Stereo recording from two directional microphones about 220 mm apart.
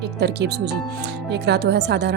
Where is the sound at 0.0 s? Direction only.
50° right (ahead or behind).